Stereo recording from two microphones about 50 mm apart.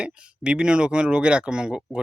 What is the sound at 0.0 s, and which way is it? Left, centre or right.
Speech, right.